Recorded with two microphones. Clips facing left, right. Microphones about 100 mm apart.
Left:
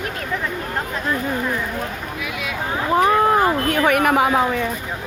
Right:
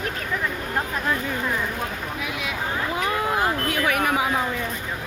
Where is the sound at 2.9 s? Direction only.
40° left (ahead or behind); by 4.7 s 60° left (ahead or behind).